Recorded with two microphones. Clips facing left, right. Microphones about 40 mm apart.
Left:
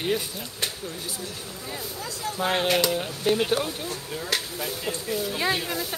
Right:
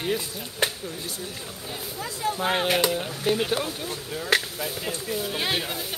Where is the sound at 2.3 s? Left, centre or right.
Centre.